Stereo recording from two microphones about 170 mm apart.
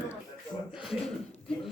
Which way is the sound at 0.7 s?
Centre (ahead or behind).